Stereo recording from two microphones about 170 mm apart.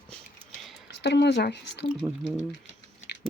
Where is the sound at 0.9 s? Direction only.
90° left.